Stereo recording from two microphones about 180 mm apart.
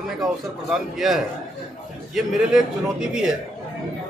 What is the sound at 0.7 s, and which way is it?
A man's voice, centre (ahead or behind).